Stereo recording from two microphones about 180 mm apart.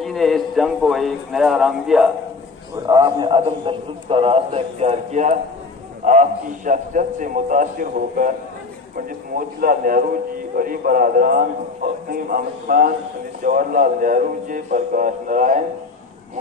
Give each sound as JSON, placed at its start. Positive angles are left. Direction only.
{"t": 0.0, "sound": "a man's voice", "side_deg": 0}
{"t": 2.9, "sound": "a man's voice", "side_deg": -20}
{"t": 9.6, "sound": "a man's voice", "side_deg": -55}